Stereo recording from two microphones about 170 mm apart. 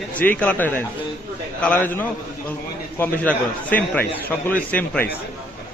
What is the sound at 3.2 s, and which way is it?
Speech, 10° left (ahead or behind).